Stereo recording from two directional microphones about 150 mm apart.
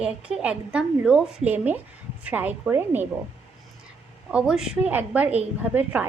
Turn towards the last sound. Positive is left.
turn(degrees=-10)  # may be behind; listen again after turning